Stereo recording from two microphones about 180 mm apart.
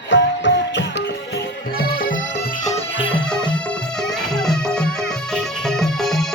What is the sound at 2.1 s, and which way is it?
Bagpipes, 90° left.